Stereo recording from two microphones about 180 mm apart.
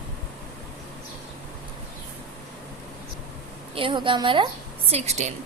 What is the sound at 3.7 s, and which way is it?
A woman's voice, 30° right (ahead or behind).